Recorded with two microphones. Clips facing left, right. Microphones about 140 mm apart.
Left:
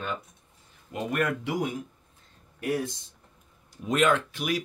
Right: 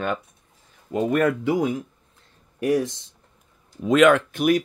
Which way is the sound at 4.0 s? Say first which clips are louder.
Right 8 dB; 65° right (ahead or behind).